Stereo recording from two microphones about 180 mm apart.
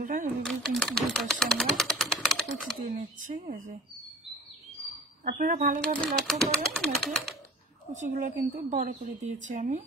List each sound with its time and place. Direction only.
0.0 s speech: 50° right (ahead or behind)
0.4 s typewriter: centre (ahead or behind)
2.8 s speech: 50° right (ahead or behind)
5.2 s speech: 45° right (ahead or behind)
5.9 s speech: 5° left (ahead or behind)
7.9 s speech: 40° right (ahead or behind)